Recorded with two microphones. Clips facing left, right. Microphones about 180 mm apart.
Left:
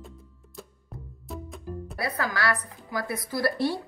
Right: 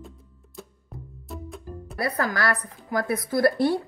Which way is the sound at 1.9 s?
50° right (ahead or behind).